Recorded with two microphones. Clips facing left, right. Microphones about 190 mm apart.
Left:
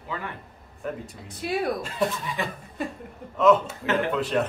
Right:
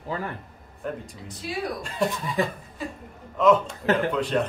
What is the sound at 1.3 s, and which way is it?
Speech, 60° left (ahead or behind).